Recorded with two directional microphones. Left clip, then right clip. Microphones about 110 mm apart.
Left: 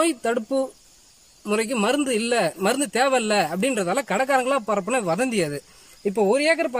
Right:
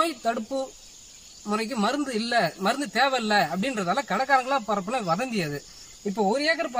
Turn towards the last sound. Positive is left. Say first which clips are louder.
# left 4 dB
turn(degrees=20)  # may be behind; listen again after turning